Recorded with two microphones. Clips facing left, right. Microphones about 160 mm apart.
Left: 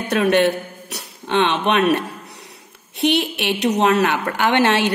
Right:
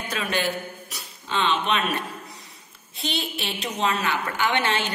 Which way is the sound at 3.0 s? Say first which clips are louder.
Left 11 dB; 70° left (ahead or behind).